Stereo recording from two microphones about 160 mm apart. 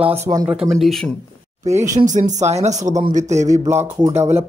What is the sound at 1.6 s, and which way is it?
Speech, 20° right (ahead or behind).